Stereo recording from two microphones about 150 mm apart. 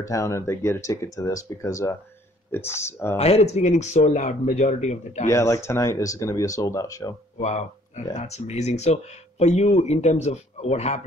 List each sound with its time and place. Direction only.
0.0 s speech: 20° left (ahead or behind)
3.2 s speech: 45° left (ahead or behind)
5.3 s speech: 20° left (ahead or behind)
7.4 s speech: 50° left (ahead or behind)